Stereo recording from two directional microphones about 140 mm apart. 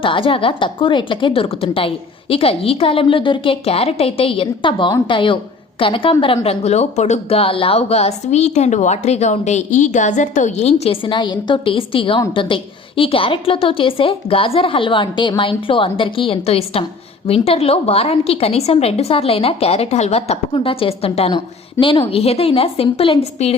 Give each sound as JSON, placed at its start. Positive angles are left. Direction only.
{"t": 0.0, "sound": "a woman's voice", "side_deg": 35}